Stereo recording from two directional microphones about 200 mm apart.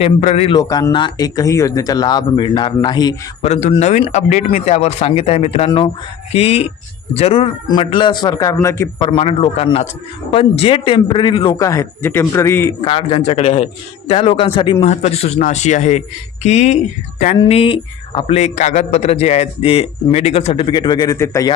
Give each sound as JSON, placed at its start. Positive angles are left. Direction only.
{"t": 0.0, "sound": "a man's voice", "side_deg": 35}
{"t": 0.7, "sound": "a man's voice", "side_deg": 20}
{"t": 3.4, "sound": "a man's voice", "side_deg": 35}
{"t": 9.0, "sound": "a man's voice", "side_deg": 25}
{"t": 12.8, "sound": "a man's voice", "side_deg": 25}
{"t": 17.3, "sound": "a man's voice", "side_deg": 25}